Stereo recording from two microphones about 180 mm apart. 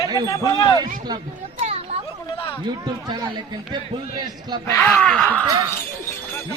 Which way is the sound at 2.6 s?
20° right (ahead or behind).